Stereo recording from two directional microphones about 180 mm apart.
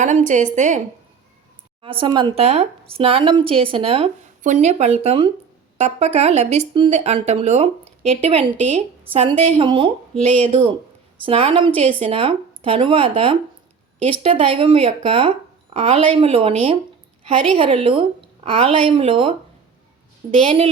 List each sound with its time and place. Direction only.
0.0 s a woman's voice: 40° right (ahead or behind)
1.8 s speech: 30° right (ahead or behind)
20.3 s speech: 30° right (ahead or behind)